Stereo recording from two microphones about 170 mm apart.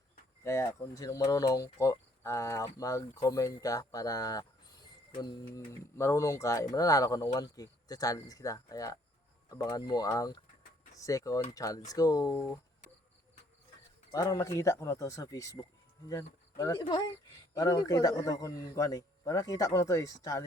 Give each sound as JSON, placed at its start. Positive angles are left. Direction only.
{"t": 0.4, "sound": "speech", "side_deg": 15}
{"t": 14.1, "sound": "speech", "side_deg": 20}